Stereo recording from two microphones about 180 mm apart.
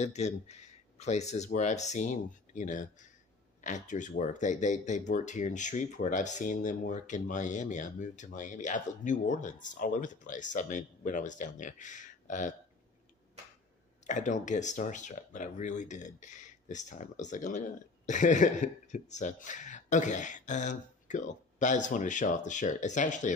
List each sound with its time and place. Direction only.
0.0 s speech: 40° left (ahead or behind)
14.0 s speech: 45° left (ahead or behind)